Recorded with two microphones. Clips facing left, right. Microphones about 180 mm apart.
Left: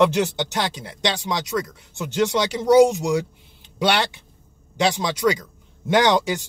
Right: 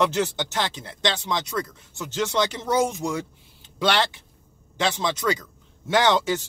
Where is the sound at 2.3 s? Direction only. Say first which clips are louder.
Left 6 dB; 10° left (ahead or behind).